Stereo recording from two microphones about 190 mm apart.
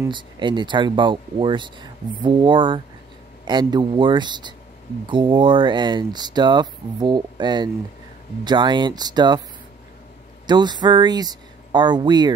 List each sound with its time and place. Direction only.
0.1 s speech: 25° right (ahead or behind)
10.4 s speech: 25° right (ahead or behind)